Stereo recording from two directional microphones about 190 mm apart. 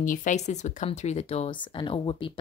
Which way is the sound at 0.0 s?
45° left (ahead or behind).